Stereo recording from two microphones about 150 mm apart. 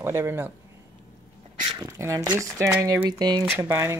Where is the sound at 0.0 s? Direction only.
15° right (ahead or behind).